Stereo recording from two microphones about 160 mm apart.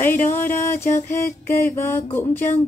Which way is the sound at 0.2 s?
55° left (ahead or behind).